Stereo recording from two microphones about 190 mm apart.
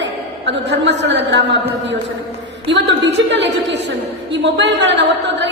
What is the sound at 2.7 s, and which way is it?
A woman's voice, 70° right (ahead or behind).